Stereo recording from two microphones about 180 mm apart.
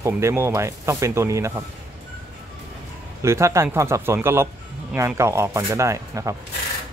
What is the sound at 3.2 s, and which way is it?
Speech, 15° right (ahead or behind).